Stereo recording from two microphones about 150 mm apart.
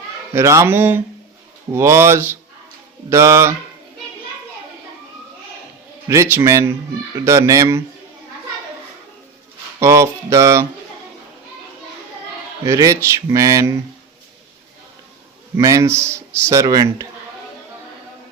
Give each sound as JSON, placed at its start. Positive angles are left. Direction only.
{"t": 0.3, "sound": "speech", "side_deg": -20}
{"t": 6.1, "sound": "speech", "side_deg": -15}
{"t": 9.8, "sound": "speech", "side_deg": -20}
{"t": 12.6, "sound": "speech", "side_deg": -20}
{"t": 15.5, "sound": "speech", "side_deg": -20}